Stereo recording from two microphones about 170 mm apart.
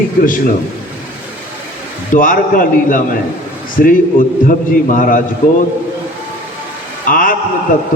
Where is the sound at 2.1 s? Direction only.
55° left (ahead or behind).